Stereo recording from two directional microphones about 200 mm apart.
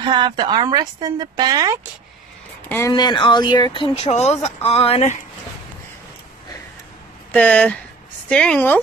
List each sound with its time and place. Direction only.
0.0 s speech: 25° right (ahead or behind)
2.9 s speech: 25° left (ahead or behind)
7.3 s speech: 5° left (ahead or behind)